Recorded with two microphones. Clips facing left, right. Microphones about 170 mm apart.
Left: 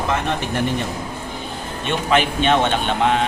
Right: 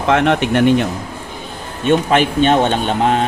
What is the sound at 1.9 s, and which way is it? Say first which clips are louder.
A man's voice: right 6 dB; 40° right (ahead or behind).